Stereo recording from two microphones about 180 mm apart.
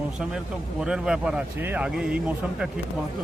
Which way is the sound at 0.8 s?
5° right (ahead or behind).